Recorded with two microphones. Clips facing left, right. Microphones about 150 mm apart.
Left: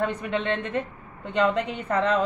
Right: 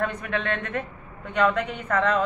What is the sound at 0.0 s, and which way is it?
A woman's voice, 25° left (ahead or behind).